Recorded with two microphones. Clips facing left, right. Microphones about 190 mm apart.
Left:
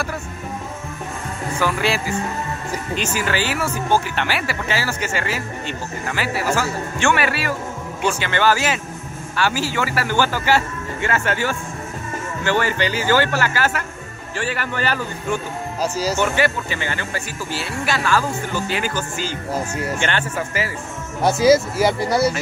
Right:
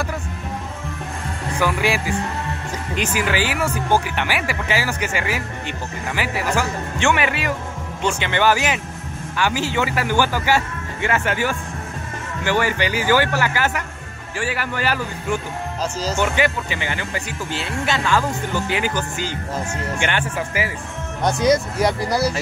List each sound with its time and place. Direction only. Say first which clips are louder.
1.6 s speech: right 1 dB; 15° right (ahead or behind)
15.8 s speech: left 3 dB; 10° left (ahead or behind)
16.2 s speech: right 2 dB; 15° right (ahead or behind)
19.5 s speech: left 5 dB; 10° left (ahead or behind)
20.0 s speech: even; 15° right (ahead or behind)
21.2 s speech: left 3 dB; 5° left (ahead or behind)